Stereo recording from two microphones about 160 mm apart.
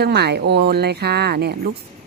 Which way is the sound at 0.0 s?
90° right.